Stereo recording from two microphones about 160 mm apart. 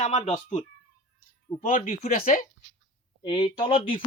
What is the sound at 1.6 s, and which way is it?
Speech, 55° left (ahead or behind).